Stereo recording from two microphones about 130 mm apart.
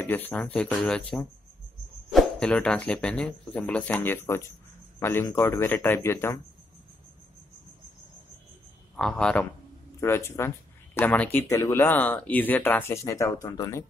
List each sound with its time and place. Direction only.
0.0 s speech: 15° left (ahead or behind)
8.9 s speech: 5° left (ahead or behind)
9.9 s speech: 20° left (ahead or behind)